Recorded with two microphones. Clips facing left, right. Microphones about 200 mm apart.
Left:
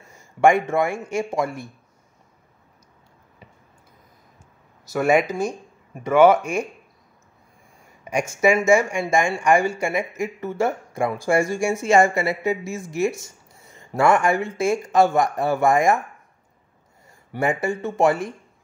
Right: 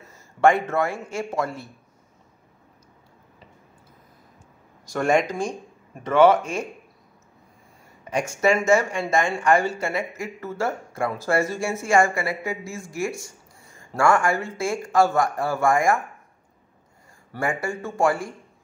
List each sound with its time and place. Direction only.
0.1 s speech: 15° left (ahead or behind)
4.9 s speech: 5° left (ahead or behind)
8.0 s a sound: 10° left (ahead or behind)
8.4 s speech: 10° left (ahead or behind)
17.3 s speech: 20° left (ahead or behind)